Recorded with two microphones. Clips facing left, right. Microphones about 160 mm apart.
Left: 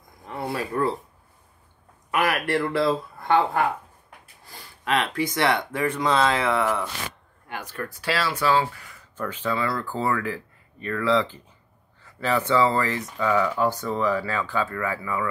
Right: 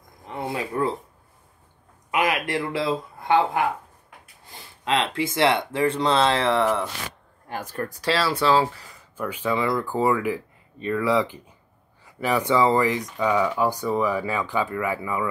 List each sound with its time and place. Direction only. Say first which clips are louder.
0.2 s a sound: even; 20° right (ahead or behind)
2.0 s speech: even; 20° right (ahead or behind)
9.1 s speech: right 2 dB; 10° right (ahead or behind)